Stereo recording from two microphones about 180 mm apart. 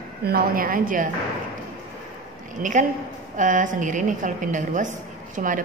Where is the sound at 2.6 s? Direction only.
50° right (ahead or behind).